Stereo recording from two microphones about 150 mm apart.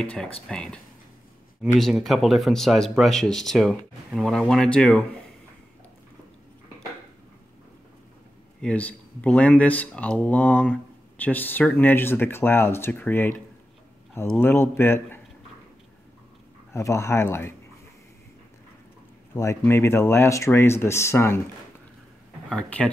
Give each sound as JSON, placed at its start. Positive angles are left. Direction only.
{"t": 0.0, "sound": "speech", "side_deg": 5}
{"t": 1.8, "sound": "speech", "side_deg": 0}
{"t": 8.5, "sound": "speech", "side_deg": 10}
{"t": 16.7, "sound": "speech", "side_deg": 20}
{"t": 19.3, "sound": "speech", "side_deg": 20}
{"t": 22.5, "sound": "speech", "side_deg": 5}